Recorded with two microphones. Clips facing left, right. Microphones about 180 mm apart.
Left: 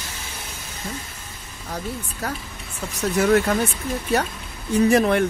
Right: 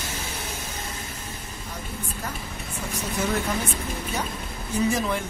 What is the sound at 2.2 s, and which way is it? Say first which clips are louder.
Speech: left 3 dB; 75° left (ahead or behind).